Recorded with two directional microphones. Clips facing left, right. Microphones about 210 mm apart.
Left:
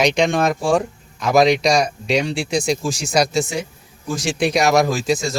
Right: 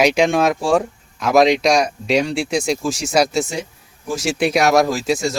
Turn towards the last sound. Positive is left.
turn(degrees=-5)  # may be behind; listen again after turning